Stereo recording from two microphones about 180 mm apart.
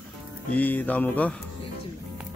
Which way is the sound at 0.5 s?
10° left (ahead or behind).